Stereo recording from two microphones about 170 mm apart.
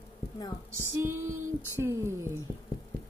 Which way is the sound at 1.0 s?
15° right (ahead or behind).